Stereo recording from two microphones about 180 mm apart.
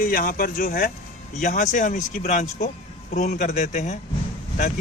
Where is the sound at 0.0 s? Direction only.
50° left (ahead or behind).